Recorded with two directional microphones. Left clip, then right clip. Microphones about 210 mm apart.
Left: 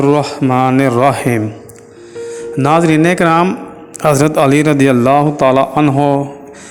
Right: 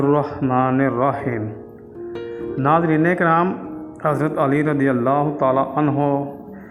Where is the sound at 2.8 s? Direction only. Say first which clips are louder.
Left 6 dB; 55° left (ahead or behind).